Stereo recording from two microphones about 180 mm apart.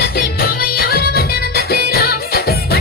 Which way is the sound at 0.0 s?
55° left (ahead or behind).